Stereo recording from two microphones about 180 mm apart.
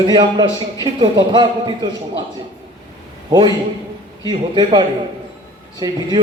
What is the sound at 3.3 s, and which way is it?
A man's voice, 25° right (ahead or behind).